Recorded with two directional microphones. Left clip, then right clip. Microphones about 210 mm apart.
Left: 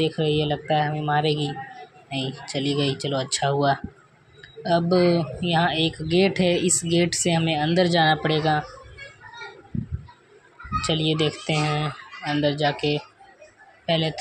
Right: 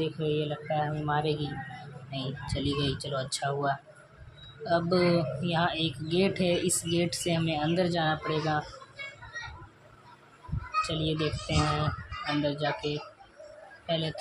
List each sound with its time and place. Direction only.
0.0 s speech: 15° left (ahead or behind)
10.8 s a woman's voice: 15° left (ahead or behind)